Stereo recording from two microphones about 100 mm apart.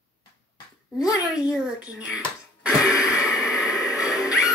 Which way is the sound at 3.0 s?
5° right (ahead or behind).